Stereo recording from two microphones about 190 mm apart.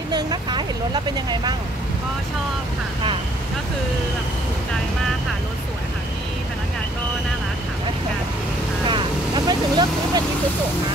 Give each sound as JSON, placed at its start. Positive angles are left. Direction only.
{"t": 0.1, "sound": "vehicle", "side_deg": -20}
{"t": 8.8, "sound": "vehicle", "side_deg": -25}